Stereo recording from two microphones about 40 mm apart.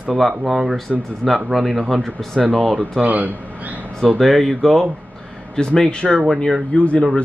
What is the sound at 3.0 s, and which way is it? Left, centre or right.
Speech, right.